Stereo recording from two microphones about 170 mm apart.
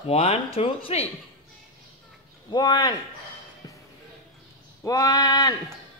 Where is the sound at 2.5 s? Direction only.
25° left (ahead or behind).